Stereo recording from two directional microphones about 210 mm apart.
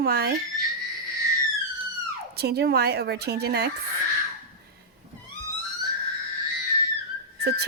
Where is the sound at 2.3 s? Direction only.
50° right (ahead or behind).